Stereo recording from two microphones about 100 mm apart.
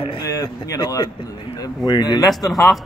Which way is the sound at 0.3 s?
40° left (ahead or behind).